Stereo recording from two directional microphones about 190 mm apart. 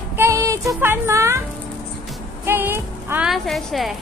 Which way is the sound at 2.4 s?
10° right (ahead or behind).